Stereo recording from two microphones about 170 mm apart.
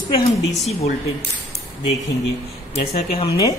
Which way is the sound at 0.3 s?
90° left.